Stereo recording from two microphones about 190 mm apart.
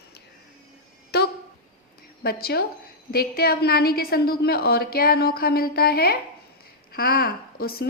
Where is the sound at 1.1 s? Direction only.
60° left (ahead or behind).